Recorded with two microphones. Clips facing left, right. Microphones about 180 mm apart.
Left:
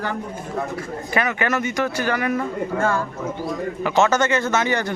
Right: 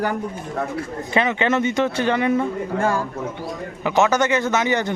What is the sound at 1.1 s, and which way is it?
A man's voice, 25° right (ahead or behind).